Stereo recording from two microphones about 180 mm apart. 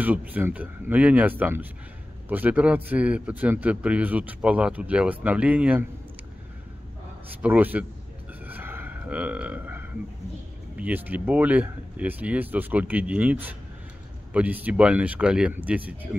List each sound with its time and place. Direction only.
0.0 s a man's voice: 10° right (ahead or behind)
7.4 s a man's voice: 10° right (ahead or behind)
8.5 s a sound: 10° right (ahead or behind)
10.8 s a man's voice: 10° right (ahead or behind)